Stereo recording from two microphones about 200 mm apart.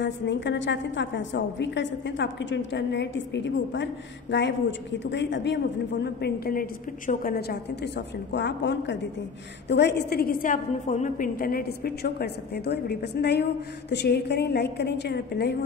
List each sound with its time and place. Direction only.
0.0 s a woman's voice: 60° left (ahead or behind)